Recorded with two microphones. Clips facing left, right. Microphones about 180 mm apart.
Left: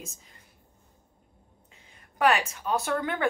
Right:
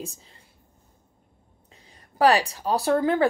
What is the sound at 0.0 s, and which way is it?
Speech, 30° right (ahead or behind).